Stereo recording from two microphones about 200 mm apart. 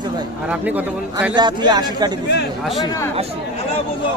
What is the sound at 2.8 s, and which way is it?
Speech, 20° left (ahead or behind).